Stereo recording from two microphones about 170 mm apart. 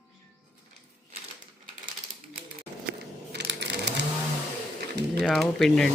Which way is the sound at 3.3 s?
90° right.